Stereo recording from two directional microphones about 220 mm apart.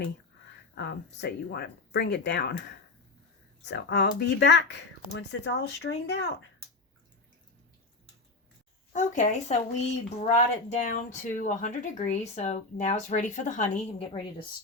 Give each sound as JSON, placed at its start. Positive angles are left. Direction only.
{"t": 0.8, "sound": "speech", "side_deg": 45}
{"t": 8.9, "sound": "speech", "side_deg": 35}